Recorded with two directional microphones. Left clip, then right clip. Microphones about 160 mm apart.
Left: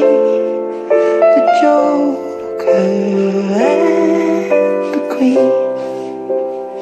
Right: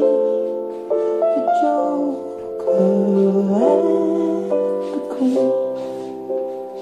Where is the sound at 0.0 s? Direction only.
25° left (ahead or behind).